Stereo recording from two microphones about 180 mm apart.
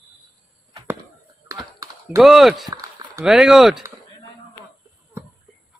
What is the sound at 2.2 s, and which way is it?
Speech, centre (ahead or behind).